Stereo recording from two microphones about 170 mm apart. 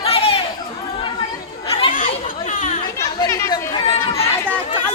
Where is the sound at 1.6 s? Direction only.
30° left (ahead or behind).